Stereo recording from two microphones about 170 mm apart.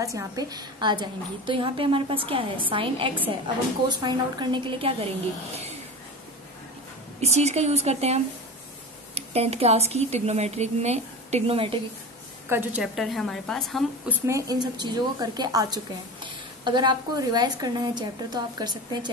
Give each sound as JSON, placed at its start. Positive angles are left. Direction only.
{"t": 0.0, "sound": "a woman's voice", "side_deg": -20}
{"t": 7.2, "sound": "a woman's voice", "side_deg": -40}
{"t": 12.4, "sound": "a woman's voice", "side_deg": -10}
{"t": 14.2, "sound": "a woman's voice", "side_deg": -20}